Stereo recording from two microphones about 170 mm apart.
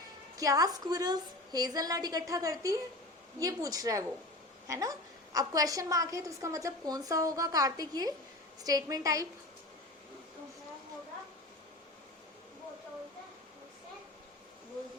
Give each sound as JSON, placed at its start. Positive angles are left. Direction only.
{"t": 0.3, "sound": "a woman's voice", "side_deg": -20}